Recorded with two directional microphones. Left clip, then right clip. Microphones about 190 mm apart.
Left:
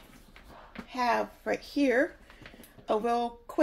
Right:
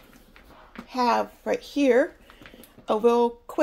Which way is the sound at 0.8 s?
45° right (ahead or behind).